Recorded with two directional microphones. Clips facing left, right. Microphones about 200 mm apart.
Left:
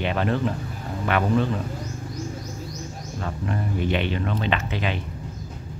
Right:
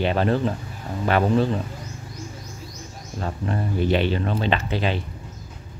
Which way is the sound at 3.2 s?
35° right (ahead or behind).